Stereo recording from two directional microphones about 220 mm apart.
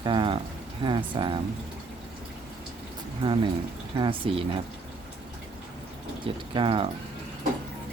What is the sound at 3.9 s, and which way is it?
Speech, 20° right (ahead or behind).